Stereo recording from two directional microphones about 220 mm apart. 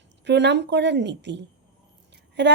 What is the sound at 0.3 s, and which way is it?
Speech, 50° right (ahead or behind).